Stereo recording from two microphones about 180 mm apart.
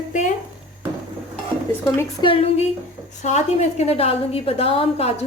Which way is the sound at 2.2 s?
30° left (ahead or behind).